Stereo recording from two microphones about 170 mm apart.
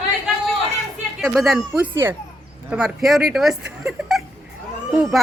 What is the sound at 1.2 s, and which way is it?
Speech, centre (ahead or behind).